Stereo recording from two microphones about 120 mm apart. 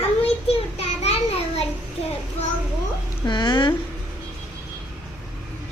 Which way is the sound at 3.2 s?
35° left (ahead or behind).